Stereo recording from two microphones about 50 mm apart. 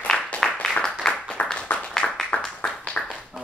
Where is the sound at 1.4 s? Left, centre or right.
Left.